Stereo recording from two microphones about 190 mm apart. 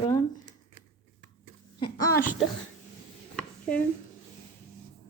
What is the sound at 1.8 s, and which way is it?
Speech, 20° left (ahead or behind).